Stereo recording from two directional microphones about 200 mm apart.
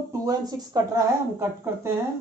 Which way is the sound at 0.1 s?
15° right (ahead or behind).